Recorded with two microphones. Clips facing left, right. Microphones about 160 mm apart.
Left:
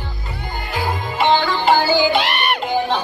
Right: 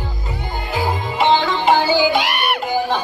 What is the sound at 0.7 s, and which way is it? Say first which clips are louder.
Music: right 2 dB; 20° right (ahead or behind).